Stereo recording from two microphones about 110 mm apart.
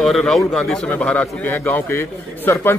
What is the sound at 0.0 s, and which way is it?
A man's voice, 5° left (ahead or behind).